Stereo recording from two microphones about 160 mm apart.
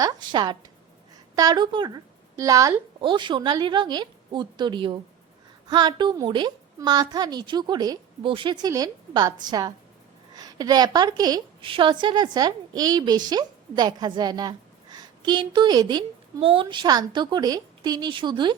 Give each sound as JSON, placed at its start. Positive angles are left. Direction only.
{"t": 0.0, "sound": "a woman's voice", "side_deg": -25}